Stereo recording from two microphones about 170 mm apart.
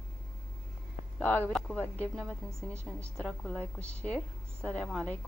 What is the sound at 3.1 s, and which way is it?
A woman's voice, 5° left (ahead or behind).